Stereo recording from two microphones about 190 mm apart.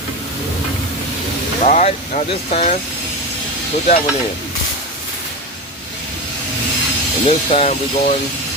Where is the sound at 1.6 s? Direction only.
40° left (ahead or behind).